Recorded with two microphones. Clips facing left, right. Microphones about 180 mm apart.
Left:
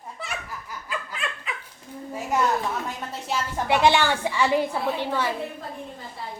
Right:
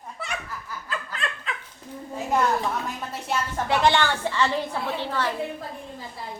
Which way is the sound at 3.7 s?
10° left (ahead or behind).